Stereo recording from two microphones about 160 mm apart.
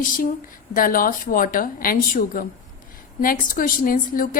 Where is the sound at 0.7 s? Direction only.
60° left (ahead or behind).